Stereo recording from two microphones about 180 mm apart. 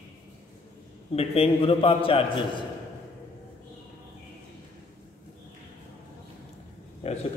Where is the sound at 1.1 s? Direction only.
35° left (ahead or behind).